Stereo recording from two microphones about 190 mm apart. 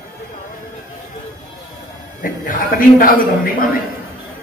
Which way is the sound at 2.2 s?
45° left (ahead or behind).